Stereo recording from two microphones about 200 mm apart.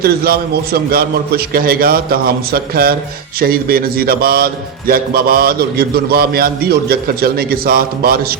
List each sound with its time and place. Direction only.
0.0 s a man's voice: 50° right (ahead or behind)